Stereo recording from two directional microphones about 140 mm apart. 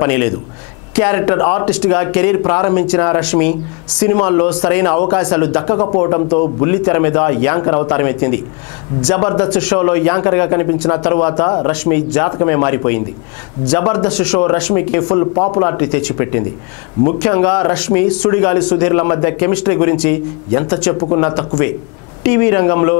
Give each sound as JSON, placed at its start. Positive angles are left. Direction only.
{"t": 0.0, "sound": "a man's voice", "side_deg": 20}